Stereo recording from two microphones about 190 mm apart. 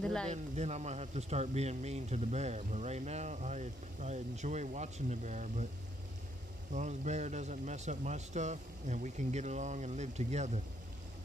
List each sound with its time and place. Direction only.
0.0 s speech: 5° left (ahead or behind)
0.3 s speech: 35° right (ahead or behind)
6.7 s speech: 40° right (ahead or behind)